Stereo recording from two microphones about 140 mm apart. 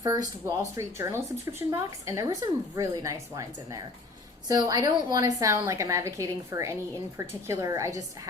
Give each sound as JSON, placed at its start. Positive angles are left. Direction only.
{"t": 0.4, "sound": "a woman's voice", "side_deg": -20}